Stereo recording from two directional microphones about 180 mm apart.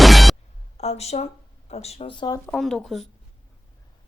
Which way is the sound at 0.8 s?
35° left (ahead or behind).